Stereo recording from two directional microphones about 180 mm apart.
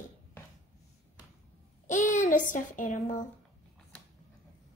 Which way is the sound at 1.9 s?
45° left (ahead or behind).